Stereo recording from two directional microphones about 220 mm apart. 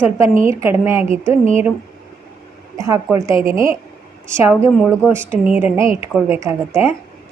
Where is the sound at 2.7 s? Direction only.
15° right (ahead or behind).